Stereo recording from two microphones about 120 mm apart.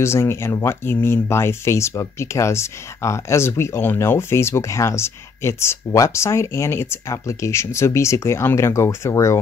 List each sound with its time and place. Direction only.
0.0 s speech: 20° left (ahead or behind)